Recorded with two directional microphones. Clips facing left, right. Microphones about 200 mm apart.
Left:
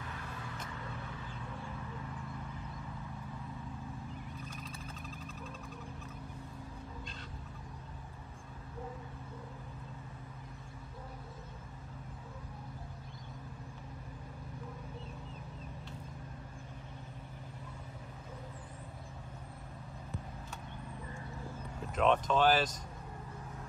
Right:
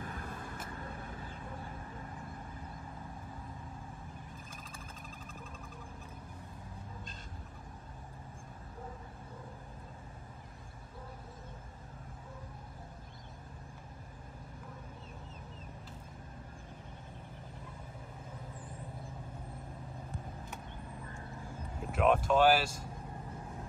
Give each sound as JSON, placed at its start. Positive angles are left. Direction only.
{"t": 0.0, "sound": "vehicle", "side_deg": -50}
{"t": 4.6, "sound": "vehicle", "side_deg": -50}
{"t": 21.9, "sound": "speech", "side_deg": -10}